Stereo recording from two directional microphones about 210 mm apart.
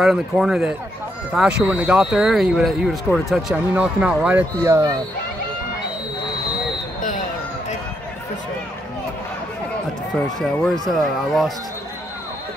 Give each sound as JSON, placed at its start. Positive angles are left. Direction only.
{"t": 0.0, "sound": "speech", "side_deg": 0}
{"t": 7.0, "sound": "a sound", "side_deg": 40}
{"t": 10.1, "sound": "speech", "side_deg": 5}